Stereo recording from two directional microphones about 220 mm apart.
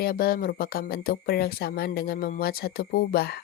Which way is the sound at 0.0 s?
45° left (ahead or behind).